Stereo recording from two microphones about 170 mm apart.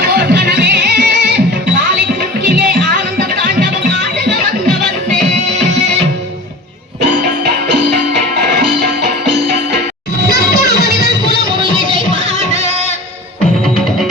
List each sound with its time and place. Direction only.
0.0 s music: 65° right (ahead or behind)
2.5 s music: 55° right (ahead or behind)
10.3 s music: 70° left (ahead or behind)
11.6 s music: 30° right (ahead or behind)